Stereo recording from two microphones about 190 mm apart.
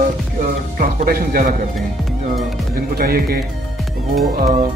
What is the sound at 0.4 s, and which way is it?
Speech, 45° right (ahead or behind).